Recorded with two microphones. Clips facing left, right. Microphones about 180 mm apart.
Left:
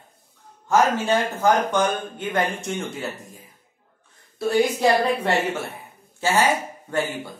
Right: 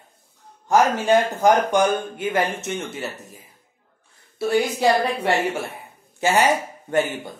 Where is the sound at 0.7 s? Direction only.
15° right (ahead or behind).